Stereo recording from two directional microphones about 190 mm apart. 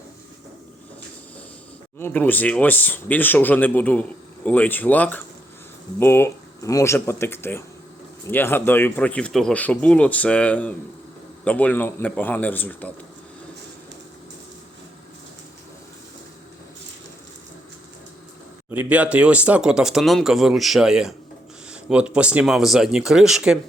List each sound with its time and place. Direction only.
2.0 s speech: 10° left (ahead or behind)
18.7 s speech: 10° right (ahead or behind)